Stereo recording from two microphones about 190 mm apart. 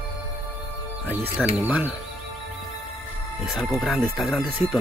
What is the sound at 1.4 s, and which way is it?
Speech, centre (ahead or behind).